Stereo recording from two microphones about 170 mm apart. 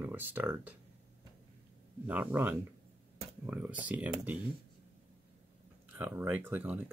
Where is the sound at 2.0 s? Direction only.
10° right (ahead or behind).